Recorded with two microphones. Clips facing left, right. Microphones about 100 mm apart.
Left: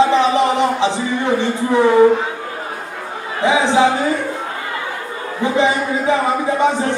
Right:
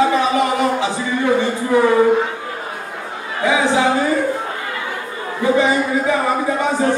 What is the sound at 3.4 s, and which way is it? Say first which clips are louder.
Speech: left 2 dB; 20° left (ahead or behind).